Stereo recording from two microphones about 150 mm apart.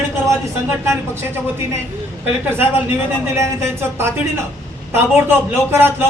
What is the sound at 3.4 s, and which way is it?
A man's voice, 15° right (ahead or behind).